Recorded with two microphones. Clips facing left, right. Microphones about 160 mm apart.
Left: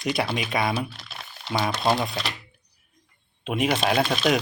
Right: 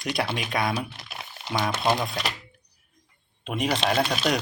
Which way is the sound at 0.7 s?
15° right (ahead or behind).